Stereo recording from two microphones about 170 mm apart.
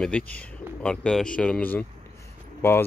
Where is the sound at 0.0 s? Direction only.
10° left (ahead or behind).